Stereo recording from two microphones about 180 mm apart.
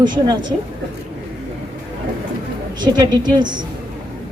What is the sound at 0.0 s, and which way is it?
Speech, 25° right (ahead or behind).